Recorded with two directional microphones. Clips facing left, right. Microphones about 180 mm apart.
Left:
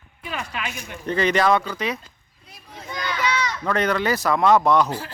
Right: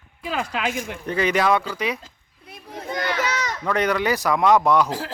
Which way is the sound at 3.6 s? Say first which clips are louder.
Right 2 dB; 10° right (ahead or behind).